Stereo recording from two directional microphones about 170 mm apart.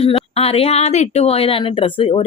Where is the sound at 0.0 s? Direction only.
35° left (ahead or behind).